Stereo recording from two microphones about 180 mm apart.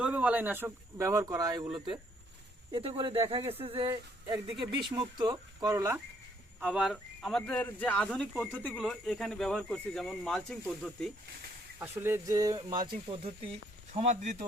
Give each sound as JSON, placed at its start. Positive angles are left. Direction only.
{"t": 0.0, "sound": "speech", "side_deg": -5}
{"t": 6.6, "sound": "speech", "side_deg": -5}
{"t": 11.8, "sound": "speech", "side_deg": -10}
{"t": 13.9, "sound": "speech", "side_deg": -40}